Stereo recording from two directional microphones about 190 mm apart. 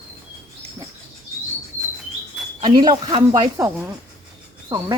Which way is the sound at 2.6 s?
25° right (ahead or behind).